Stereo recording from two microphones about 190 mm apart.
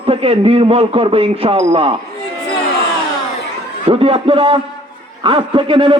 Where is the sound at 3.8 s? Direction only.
30° right (ahead or behind).